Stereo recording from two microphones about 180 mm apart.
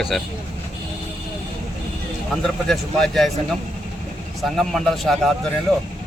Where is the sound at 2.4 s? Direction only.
5° left (ahead or behind).